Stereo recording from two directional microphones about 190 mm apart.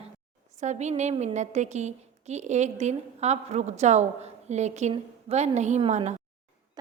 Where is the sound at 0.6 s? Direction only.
40° right (ahead or behind).